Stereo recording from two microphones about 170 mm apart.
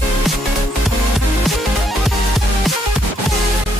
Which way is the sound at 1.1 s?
Centre (ahead or behind).